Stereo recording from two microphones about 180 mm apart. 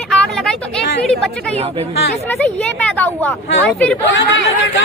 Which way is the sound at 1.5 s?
35° right (ahead or behind).